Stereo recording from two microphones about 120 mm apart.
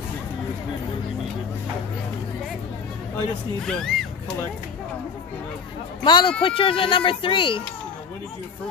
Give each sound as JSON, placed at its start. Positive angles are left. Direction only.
{"t": 3.6, "sound": "speech", "side_deg": 5}
{"t": 6.0, "sound": "speech", "side_deg": 40}